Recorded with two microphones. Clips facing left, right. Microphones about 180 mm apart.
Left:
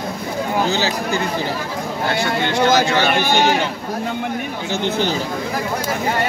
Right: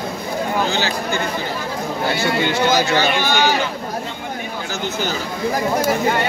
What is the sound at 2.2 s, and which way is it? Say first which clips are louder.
Speech: left 1 dB; 5° right (ahead or behind).